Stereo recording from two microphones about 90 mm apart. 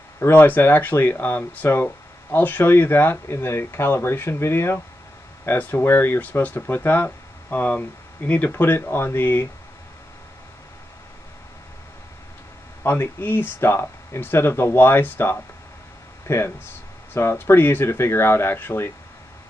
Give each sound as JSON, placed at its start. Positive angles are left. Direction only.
{"t": 0.2, "sound": "speech", "side_deg": 20}
{"t": 12.8, "sound": "speech", "side_deg": 20}